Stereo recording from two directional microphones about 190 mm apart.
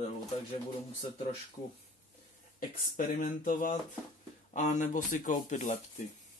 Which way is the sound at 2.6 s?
45° left (ahead or behind).